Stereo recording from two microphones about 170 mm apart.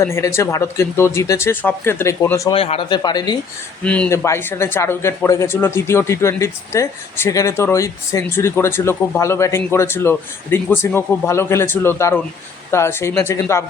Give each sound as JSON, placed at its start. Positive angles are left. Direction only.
{"t": 0.0, "sound": "speech", "side_deg": 15}
{"t": 2.5, "sound": "speech", "side_deg": 35}
{"t": 3.8, "sound": "speech", "side_deg": 5}